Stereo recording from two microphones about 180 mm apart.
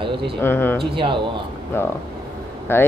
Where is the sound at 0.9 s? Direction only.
30° right (ahead or behind).